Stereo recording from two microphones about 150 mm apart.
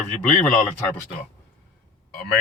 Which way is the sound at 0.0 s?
10° left (ahead or behind).